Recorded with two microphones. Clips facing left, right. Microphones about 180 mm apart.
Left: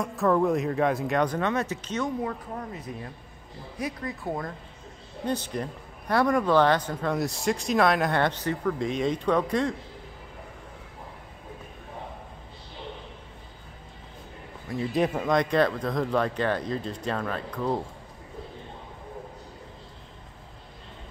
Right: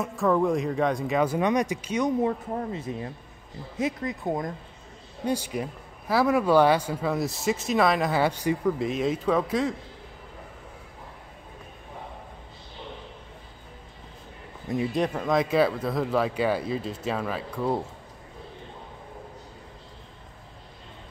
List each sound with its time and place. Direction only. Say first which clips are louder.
0.0 s speech: even; centre (ahead or behind)
14.9 s speech: left 3 dB; centre (ahead or behind)